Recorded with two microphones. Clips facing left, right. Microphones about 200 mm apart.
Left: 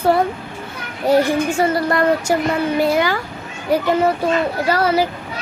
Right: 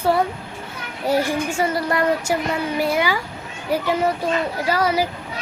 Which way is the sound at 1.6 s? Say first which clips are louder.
Left 2 dB; 10° right (ahead or behind).